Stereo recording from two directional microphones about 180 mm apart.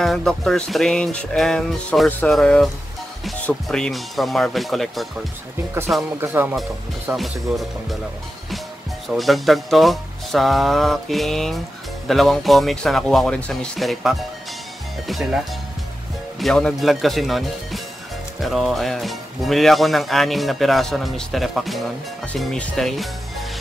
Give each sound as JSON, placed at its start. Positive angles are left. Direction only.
{"t": 0.0, "sound": "speech", "side_deg": 0}
{"t": 6.2, "sound": "speech", "side_deg": -10}
{"t": 7.1, "sound": "speech", "side_deg": 0}
{"t": 9.1, "sound": "speech", "side_deg": 0}